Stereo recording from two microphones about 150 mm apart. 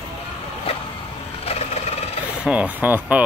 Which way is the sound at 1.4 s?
40° left (ahead or behind).